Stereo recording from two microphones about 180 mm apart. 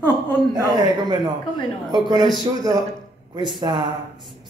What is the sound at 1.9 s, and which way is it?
Speech, 20° right (ahead or behind).